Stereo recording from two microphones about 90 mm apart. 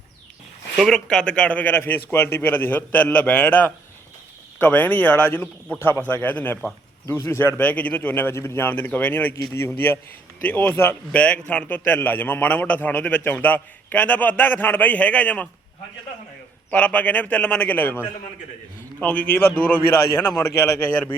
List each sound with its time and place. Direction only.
0.8 s a man's voice: 5° left (ahead or behind)
11.9 s a man's voice: 20° left (ahead or behind)
16.7 s a man's voice: 15° left (ahead or behind)